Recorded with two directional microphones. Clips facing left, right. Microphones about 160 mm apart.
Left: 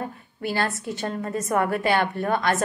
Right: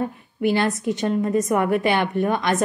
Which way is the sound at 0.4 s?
20° right (ahead or behind).